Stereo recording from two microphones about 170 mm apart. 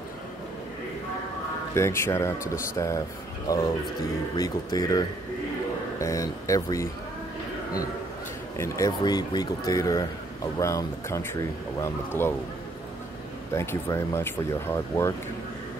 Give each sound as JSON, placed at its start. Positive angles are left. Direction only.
{"t": 1.7, "sound": "speech", "side_deg": 15}
{"t": 8.5, "sound": "speech", "side_deg": 15}
{"t": 13.5, "sound": "speech", "side_deg": 15}